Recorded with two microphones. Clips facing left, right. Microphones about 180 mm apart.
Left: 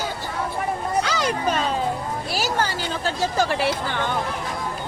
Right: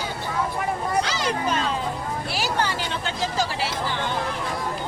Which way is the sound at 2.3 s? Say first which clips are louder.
Left 1 dB; 40° left (ahead or behind).